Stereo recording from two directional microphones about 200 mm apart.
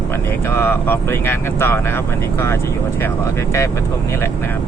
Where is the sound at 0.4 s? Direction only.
10° left (ahead or behind).